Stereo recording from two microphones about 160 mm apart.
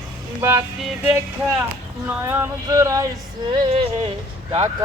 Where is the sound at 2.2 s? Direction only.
20° right (ahead or behind).